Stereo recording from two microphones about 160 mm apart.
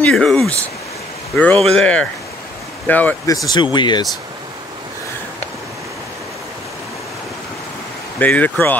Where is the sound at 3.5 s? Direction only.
30° left (ahead or behind).